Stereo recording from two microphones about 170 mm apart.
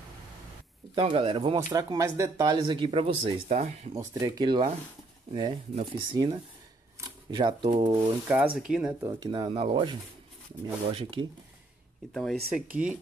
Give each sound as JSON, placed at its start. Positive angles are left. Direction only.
{"t": 0.9, "sound": "speech", "side_deg": -35}
{"t": 4.1, "sound": "speech", "side_deg": -25}
{"t": 8.0, "sound": "speech", "side_deg": -10}
{"t": 9.0, "sound": "speech", "side_deg": -25}
{"t": 12.1, "sound": "speech", "side_deg": 0}